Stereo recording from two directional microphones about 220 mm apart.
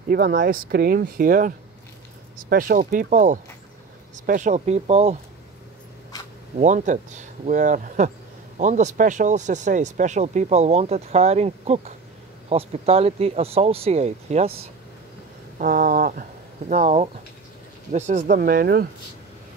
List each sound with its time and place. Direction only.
0.1 s speech: 45° right (ahead or behind); by 5.1 s 30° right (ahead or behind)
6.6 s speech: 35° right (ahead or behind)
15.6 s speech: 40° right (ahead or behind)